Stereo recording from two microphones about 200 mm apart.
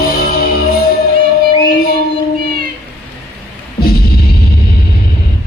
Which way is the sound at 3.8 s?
50° left (ahead or behind).